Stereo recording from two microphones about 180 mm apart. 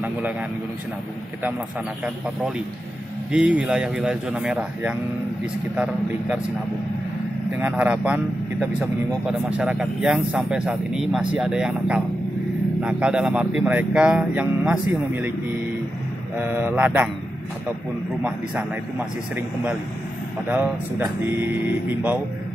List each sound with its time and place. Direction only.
3.3 s speech: 5° right (ahead or behind)
7.5 s speech: 10° right (ahead or behind)
16.3 s speech: 10° right (ahead or behind)
18.2 s speech: 5° right (ahead or behind)